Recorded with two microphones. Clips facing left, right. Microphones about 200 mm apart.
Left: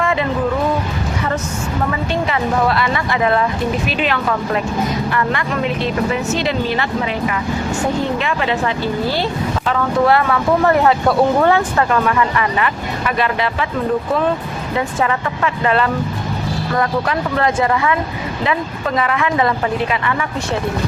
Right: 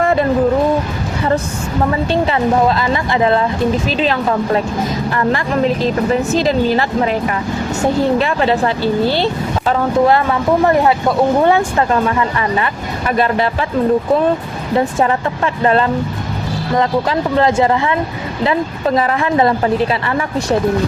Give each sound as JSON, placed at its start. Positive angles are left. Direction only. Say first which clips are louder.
{"t": 0.0, "sound": "music", "louder": "right 4 dB", "side_deg": -40}
{"t": 2.8, "sound": "speech", "louder": "right 3 dB", "side_deg": -30}
{"t": 11.9, "sound": "speech", "louder": "right 1 dB", "side_deg": -30}
{"t": 13.1, "sound": "speech", "louder": "right 4 dB", "side_deg": -40}
{"t": 15.6, "sound": "speech", "louder": "right 4 dB", "side_deg": -35}